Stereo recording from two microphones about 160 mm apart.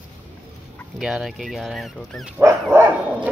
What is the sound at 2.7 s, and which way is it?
Speech, 10° right (ahead or behind).